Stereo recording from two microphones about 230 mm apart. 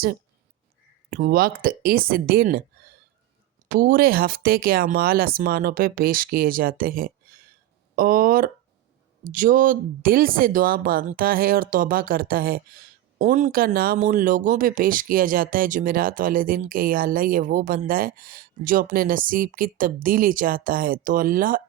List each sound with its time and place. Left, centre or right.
1.1 s speech: right
3.7 s speech: right